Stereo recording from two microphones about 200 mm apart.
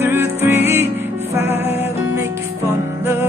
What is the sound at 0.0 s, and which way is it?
Music, 10° right (ahead or behind).